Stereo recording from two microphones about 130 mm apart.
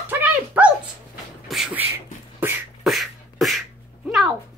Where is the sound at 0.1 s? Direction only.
10° right (ahead or behind).